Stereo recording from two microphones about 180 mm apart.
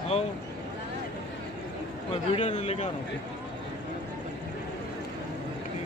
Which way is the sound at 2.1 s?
35° left (ahead or behind).